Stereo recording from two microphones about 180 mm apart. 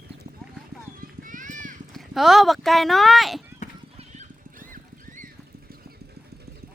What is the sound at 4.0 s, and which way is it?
Clip-clop, 45° right (ahead or behind).